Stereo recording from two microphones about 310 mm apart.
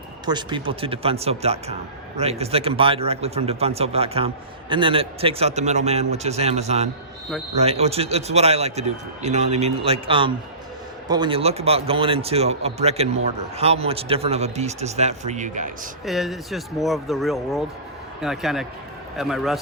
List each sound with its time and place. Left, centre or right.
0.3 s a man's voice: centre
16.0 s speech: centre